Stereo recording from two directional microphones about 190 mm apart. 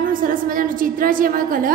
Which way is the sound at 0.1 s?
45° right (ahead or behind).